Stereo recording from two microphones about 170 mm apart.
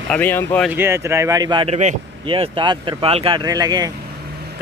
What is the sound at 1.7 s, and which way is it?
Speech, 45° right (ahead or behind).